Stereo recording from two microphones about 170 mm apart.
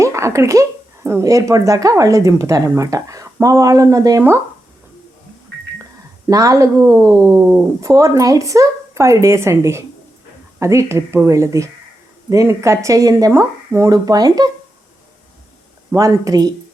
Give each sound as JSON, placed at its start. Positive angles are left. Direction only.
{"t": 0.0, "sound": "speech", "side_deg": -15}
{"t": 6.2, "sound": "a woman's voice", "side_deg": -20}
{"t": 15.9, "sound": "speech", "side_deg": -20}